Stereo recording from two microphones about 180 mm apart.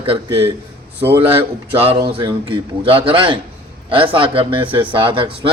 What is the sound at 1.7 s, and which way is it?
A man's voice, 30° right (ahead or behind).